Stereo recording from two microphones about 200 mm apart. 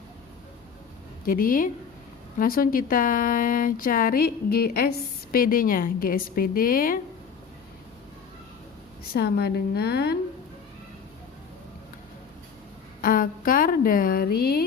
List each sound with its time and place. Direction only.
1.2 s speech: 45° left (ahead or behind)
9.1 s speech: 55° left (ahead or behind)
13.0 s speech: 45° left (ahead or behind)